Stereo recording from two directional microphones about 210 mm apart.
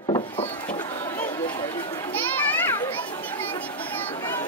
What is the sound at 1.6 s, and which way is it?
Children playing, 10° left (ahead or behind).